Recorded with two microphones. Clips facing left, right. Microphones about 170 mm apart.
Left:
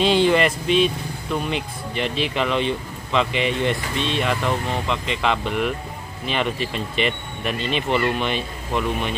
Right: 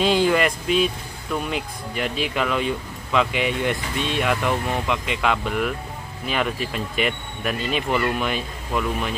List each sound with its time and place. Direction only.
0.0 s speech: 5° right (ahead or behind)